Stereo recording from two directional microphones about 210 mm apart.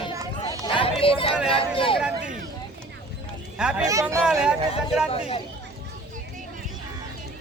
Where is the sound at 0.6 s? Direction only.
25° left (ahead or behind).